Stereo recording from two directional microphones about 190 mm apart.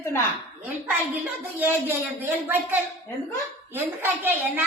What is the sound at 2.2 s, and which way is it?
A woman's voice, 10° right (ahead or behind).